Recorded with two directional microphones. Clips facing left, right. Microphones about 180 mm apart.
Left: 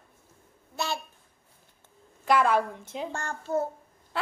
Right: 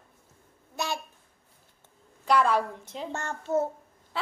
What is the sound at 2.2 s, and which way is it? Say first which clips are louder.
Speech: left 1 dB; centre (ahead or behind).